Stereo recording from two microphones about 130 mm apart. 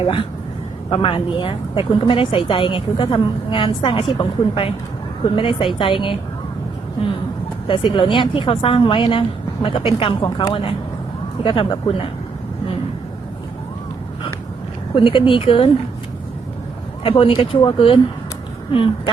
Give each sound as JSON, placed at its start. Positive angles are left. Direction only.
{"t": 0.0, "sound": "a woman's voice", "side_deg": 45}
{"t": 7.7, "sound": "a woman's voice", "side_deg": 40}
{"t": 14.9, "sound": "a woman's voice", "side_deg": 40}
{"t": 17.0, "sound": "a woman's voice", "side_deg": 45}